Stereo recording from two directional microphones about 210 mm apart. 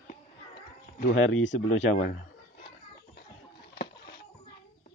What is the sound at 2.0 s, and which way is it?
Chicken, 40° left (ahead or behind).